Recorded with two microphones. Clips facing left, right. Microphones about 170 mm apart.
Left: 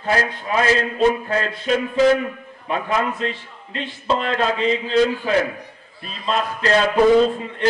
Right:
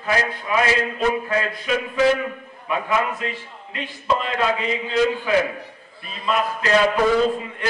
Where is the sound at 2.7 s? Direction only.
30° left (ahead or behind).